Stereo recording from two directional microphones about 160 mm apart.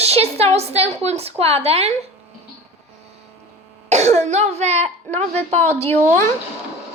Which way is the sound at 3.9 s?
45° right (ahead or behind).